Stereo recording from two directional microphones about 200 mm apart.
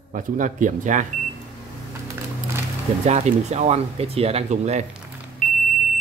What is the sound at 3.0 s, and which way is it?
Speech, 35° right (ahead or behind).